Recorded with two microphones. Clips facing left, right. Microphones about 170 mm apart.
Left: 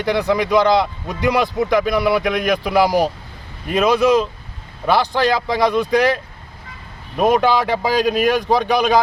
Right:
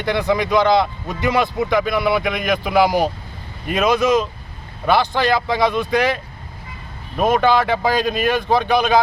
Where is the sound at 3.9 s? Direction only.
35° left (ahead or behind).